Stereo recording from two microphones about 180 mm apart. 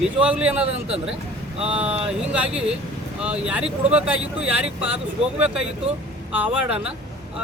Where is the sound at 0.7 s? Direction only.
35° right (ahead or behind).